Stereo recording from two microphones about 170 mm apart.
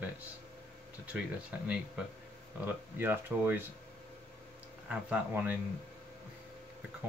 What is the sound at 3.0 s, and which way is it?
Speech, 10° right (ahead or behind).